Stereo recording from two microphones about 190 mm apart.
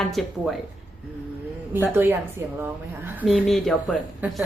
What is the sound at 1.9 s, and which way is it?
A woman's voice, 10° right (ahead or behind).